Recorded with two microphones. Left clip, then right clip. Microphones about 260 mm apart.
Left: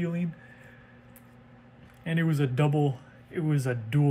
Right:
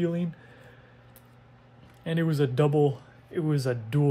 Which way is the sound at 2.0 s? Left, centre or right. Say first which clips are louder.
Right 2 dB; centre.